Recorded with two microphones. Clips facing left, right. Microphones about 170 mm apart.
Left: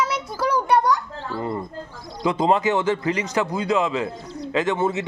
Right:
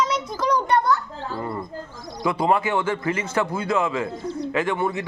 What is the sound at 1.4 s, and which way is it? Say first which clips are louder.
Speech: left 2 dB; 15° left (ahead or behind).